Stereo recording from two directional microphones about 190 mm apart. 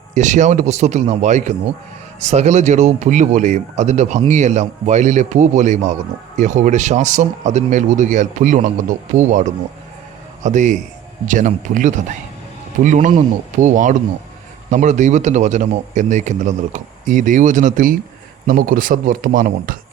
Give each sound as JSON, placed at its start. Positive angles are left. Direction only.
{"t": 0.1, "sound": "speech", "side_deg": -40}